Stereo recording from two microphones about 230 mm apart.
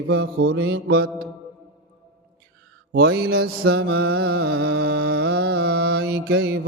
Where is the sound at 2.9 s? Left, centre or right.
Right.